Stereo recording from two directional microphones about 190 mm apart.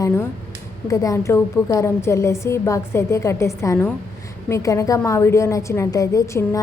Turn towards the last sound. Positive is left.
turn(degrees=15)  # may be behind; listen again after turning